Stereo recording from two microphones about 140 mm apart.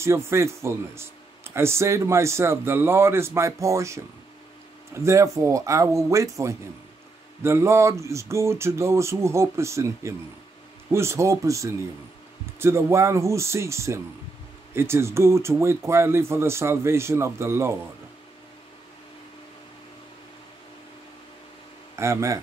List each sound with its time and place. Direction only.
0.0 s speech: 20° right (ahead or behind)
21.9 s speech: 20° right (ahead or behind)